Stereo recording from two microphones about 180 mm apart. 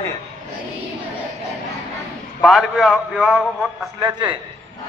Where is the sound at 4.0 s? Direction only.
25° right (ahead or behind).